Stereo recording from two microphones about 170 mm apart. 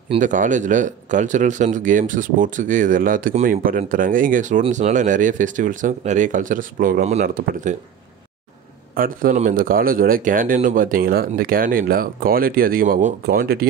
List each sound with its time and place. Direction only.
0.2 s speech: 50° right (ahead or behind)
7.2 s speech: 60° right (ahead or behind)
8.9 s speech: 55° right (ahead or behind)